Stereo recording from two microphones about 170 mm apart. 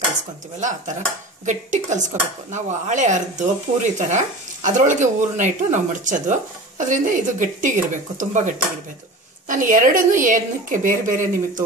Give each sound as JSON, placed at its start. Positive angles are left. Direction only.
{"t": 0.6, "sound": "speech", "side_deg": -45}